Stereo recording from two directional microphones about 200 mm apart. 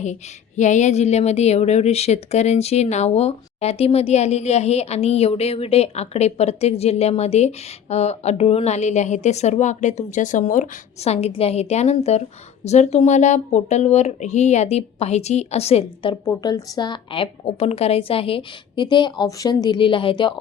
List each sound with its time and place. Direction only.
0.0 s a woman's voice: 35° left (ahead or behind)
16.2 s a woman's voice: 20° left (ahead or behind)